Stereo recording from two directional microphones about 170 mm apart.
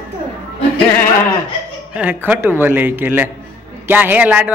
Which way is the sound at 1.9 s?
10° right (ahead or behind).